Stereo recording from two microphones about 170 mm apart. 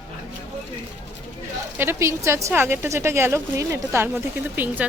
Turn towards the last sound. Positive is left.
turn(degrees=-10)  # may be behind; listen again after turning